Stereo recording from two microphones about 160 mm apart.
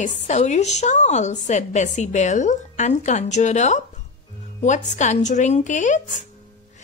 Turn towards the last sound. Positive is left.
turn(degrees=50)  # may be behind; listen again after turning